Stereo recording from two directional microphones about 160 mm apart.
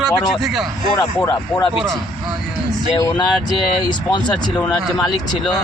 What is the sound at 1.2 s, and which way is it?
Speech, 25° left (ahead or behind).